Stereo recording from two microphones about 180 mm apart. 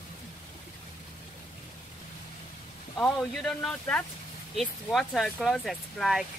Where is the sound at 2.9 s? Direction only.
Centre (ahead or behind).